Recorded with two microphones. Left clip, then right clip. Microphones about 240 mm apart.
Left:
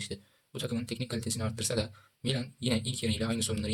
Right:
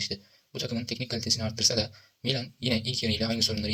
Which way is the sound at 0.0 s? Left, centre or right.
Centre.